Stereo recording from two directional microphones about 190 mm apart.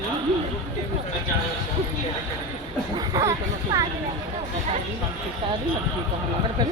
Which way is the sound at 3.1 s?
20° right (ahead or behind).